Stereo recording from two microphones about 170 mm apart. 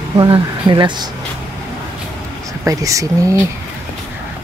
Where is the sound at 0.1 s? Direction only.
30° right (ahead or behind).